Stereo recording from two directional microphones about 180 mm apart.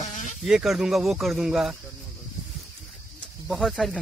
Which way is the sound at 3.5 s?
Centre (ahead or behind).